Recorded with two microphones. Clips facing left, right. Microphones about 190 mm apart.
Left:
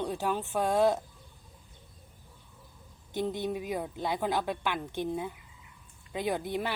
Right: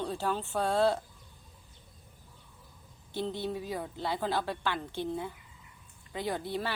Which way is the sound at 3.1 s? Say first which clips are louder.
Left 2 dB; 15° left (ahead or behind).